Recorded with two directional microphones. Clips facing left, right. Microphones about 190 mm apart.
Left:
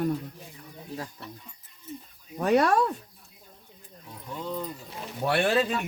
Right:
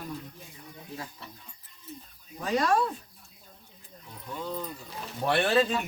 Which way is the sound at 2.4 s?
65° left (ahead or behind).